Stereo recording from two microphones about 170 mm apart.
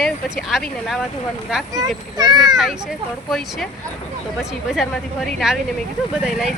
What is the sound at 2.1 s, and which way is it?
Speech, 25° right (ahead or behind).